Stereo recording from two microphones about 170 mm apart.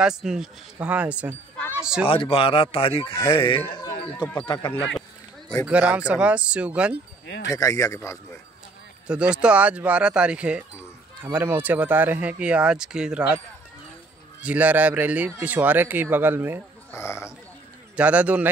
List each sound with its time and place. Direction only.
0.0 s a man's voice: 5° right (ahead or behind)
2.0 s speech: 30° left (ahead or behind)
4.1 s speech: 10° left (ahead or behind)
4.4 s speech: 25° left (ahead or behind)
5.7 s speech: 5° right (ahead or behind)
7.2 s speech: 90° left
7.5 s speech: 20° left (ahead or behind)
9.0 s speech: 5° right (ahead or behind)
14.4 s speech: 10° right (ahead or behind)
16.9 s speech: 15° left (ahead or behind)
17.9 s speech: 10° right (ahead or behind)